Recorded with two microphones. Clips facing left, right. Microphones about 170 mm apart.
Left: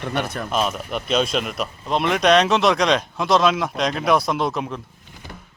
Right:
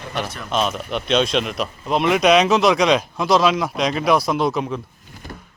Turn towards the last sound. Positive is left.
turn(degrees=0)  # may be behind; listen again after turning